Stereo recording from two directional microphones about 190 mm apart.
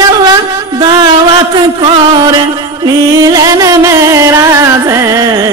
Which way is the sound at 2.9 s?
20° right (ahead or behind).